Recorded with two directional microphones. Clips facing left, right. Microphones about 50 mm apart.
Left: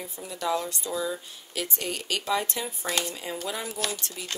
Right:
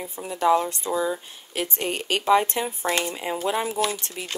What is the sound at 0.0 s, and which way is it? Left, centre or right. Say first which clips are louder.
Speech: right 8 dB; right.